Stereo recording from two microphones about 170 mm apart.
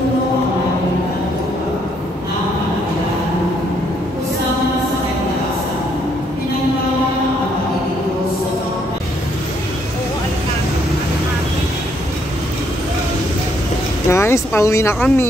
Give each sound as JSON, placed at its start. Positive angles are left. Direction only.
{"t": 14.0, "sound": "speech", "side_deg": 15}